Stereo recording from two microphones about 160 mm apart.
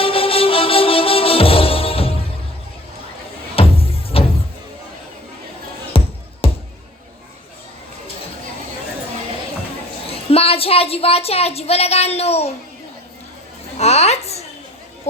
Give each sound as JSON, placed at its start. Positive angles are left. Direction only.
{"t": 0.0, "sound": "music", "side_deg": 35}
{"t": 3.5, "sound": "music", "side_deg": 35}
{"t": 6.0, "sound": "music", "side_deg": 35}
{"t": 6.4, "sound": "a sound", "side_deg": 35}
{"t": 10.1, "sound": "a woman's voice", "side_deg": 35}
{"t": 13.7, "sound": "a sound", "side_deg": 40}